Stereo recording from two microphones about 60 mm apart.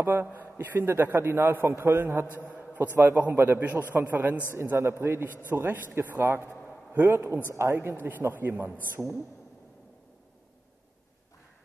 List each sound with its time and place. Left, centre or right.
0.0 s a man's voice: right
2.5 s a sound: right
3.0 s a man's voice: right
4.5 s a man's voice: right
6.5 s a sound: centre
6.9 s a man's voice: right
8.3 s a man's voice: right
9.0 s a woman's voice: centre